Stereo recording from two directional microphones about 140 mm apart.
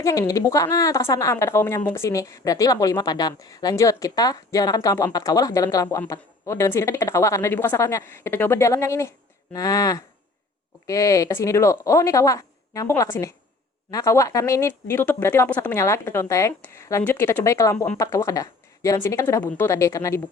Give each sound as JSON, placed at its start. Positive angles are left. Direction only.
{"t": 0.0, "sound": "a woman's voice", "side_deg": 20}